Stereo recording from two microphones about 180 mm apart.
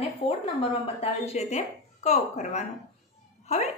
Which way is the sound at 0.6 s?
30° left (ahead or behind).